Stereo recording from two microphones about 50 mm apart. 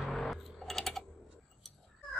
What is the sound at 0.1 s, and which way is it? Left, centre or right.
Typing, centre.